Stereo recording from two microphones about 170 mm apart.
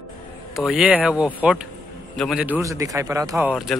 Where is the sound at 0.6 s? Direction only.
5° right (ahead or behind).